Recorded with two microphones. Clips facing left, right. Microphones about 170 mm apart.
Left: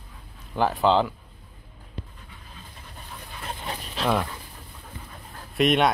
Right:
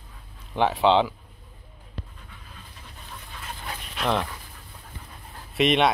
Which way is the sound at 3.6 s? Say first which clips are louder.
Left 1 dB; 30° left (ahead or behind).